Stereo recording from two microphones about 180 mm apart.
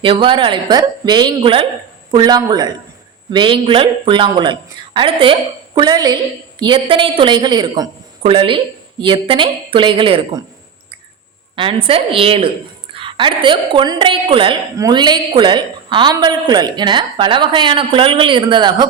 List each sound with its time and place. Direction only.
0.0 s a woman's voice: 30° right (ahead or behind)
11.5 s a woman's voice: 30° right (ahead or behind)